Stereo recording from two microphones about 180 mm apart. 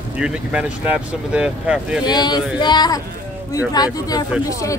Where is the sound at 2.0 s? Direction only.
25° left (ahead or behind).